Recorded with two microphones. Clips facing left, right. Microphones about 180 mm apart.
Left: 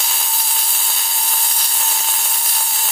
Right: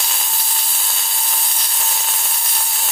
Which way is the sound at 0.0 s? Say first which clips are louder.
Left 1 dB; centre (ahead or behind).